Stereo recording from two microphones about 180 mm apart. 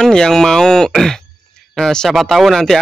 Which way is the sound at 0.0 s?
5° left (ahead or behind).